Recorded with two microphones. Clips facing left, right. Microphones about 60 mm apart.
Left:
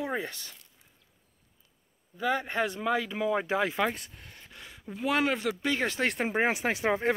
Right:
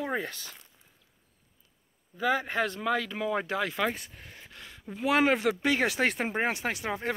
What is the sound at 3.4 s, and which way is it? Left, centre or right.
Speech, left.